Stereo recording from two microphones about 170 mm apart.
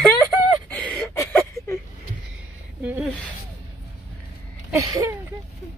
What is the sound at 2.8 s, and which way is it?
Speech, 10° right (ahead or behind).